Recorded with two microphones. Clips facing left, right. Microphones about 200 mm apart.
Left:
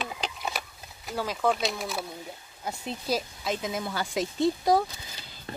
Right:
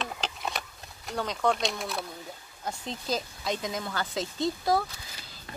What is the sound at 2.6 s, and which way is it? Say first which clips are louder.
Speech: left 1 dB; 10° left (ahead or behind).